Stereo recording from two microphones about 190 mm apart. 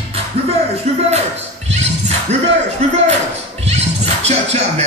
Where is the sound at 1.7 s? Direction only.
35° right (ahead or behind).